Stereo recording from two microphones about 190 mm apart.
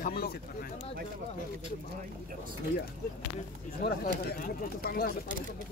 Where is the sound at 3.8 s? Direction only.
50° left (ahead or behind).